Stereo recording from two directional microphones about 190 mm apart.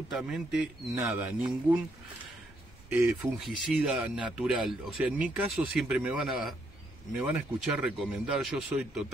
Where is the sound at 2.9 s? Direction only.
5° right (ahead or behind).